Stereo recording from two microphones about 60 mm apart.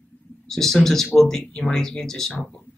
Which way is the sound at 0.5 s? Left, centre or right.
Centre.